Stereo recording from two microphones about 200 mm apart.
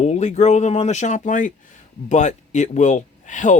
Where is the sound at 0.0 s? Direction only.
35° left (ahead or behind).